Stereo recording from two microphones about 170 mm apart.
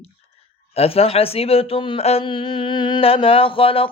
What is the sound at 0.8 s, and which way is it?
Speech, 35° left (ahead or behind).